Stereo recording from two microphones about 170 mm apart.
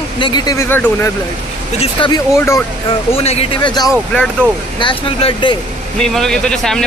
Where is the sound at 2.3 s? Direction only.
15° left (ahead or behind).